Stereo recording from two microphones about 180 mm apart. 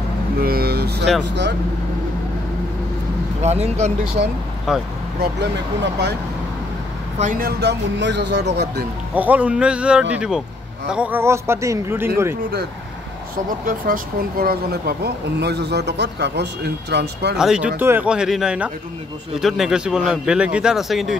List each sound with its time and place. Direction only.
0.4 s vehicle: 55° right (ahead or behind)
1.2 s speech: 75° right (ahead or behind)
3.3 s speech: 35° right (ahead or behind)
4.7 s a man's voice: 5° right (ahead or behind)
7.2 s speech: 50° right (ahead or behind); by 8.8 s 70° right (ahead or behind)
9.1 s speech: 10° right (ahead or behind)
13.7 s speech: 50° right (ahead or behind); by 17.4 s 70° right (ahead or behind)
17.4 s a man's voice: 5° right (ahead or behind)